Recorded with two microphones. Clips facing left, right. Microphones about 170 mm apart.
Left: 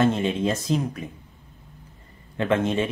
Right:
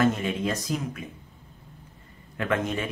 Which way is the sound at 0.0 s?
25° left (ahead or behind).